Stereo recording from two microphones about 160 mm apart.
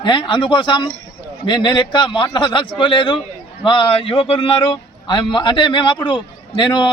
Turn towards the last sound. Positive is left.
turn(degrees=30)  # may be behind; listen again after turning